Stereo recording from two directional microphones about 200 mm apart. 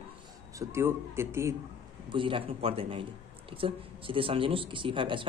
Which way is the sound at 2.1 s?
25° right (ahead or behind).